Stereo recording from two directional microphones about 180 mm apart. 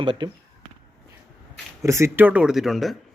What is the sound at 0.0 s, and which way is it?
Speech, 30° right (ahead or behind).